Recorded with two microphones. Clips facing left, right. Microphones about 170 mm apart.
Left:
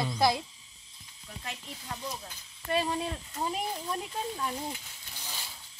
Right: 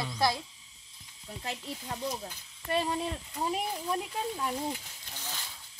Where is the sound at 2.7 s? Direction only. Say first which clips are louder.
Even; centre (ahead or behind).